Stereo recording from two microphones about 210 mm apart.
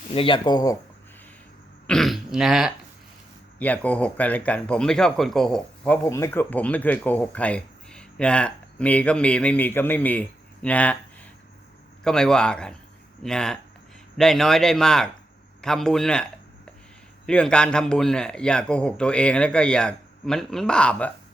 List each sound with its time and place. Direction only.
0.1 s speech: 25° left (ahead or behind)
1.9 s speech: centre (ahead or behind)